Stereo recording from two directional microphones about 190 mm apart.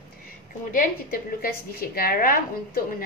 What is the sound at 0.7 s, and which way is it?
A woman's voice, 45° left (ahead or behind).